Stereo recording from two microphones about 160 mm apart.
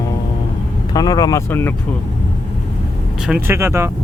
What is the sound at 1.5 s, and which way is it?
Speech, 15° left (ahead or behind).